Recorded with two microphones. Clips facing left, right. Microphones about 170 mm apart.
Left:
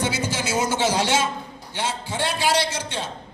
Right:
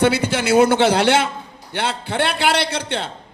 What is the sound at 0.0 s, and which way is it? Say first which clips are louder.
A man's voice: right 8 dB; 65° right (ahead or behind).